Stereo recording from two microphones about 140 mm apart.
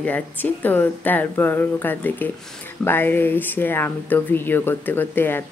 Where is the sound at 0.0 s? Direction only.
15° left (ahead or behind).